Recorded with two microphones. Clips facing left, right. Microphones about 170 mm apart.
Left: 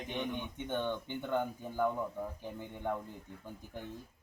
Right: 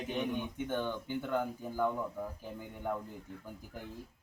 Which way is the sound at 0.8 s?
20° left (ahead or behind).